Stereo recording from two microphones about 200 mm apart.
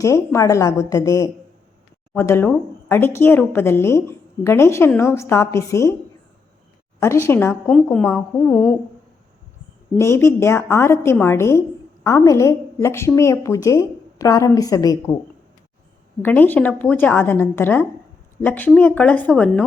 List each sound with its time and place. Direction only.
0.0 s speech: 15° left (ahead or behind)
7.0 s speech: 10° left (ahead or behind)
10.0 s speech: 15° left (ahead or behind)
16.2 s speech: 10° left (ahead or behind)